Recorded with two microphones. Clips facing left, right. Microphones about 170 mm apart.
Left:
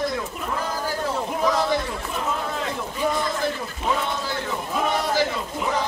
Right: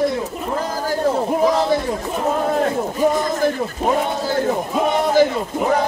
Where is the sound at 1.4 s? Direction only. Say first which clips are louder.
Right 4 dB; 35° right (ahead or behind).